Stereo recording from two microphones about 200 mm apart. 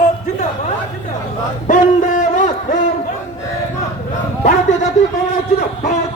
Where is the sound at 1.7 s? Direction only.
40° left (ahead or behind).